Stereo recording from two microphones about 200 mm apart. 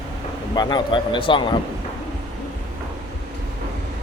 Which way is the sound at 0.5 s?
25° left (ahead or behind).